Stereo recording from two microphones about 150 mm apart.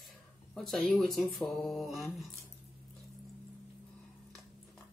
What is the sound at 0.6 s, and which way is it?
Speech, centre (ahead or behind).